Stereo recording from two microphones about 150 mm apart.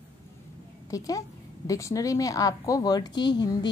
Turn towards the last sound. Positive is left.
turn(degrees=30)  # may be behind; listen again after turning